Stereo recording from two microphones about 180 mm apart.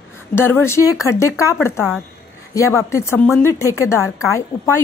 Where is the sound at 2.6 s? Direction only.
15° left (ahead or behind).